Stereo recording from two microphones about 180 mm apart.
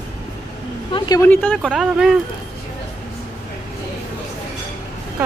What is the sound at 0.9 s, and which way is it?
Speech, 25° left (ahead or behind).